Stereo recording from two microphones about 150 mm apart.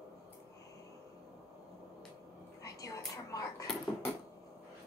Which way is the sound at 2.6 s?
25° left (ahead or behind).